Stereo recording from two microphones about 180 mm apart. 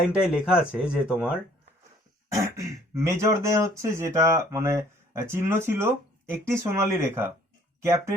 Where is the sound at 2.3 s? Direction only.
15° right (ahead or behind).